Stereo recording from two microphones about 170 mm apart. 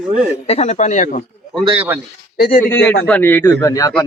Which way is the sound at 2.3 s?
65° left (ahead or behind).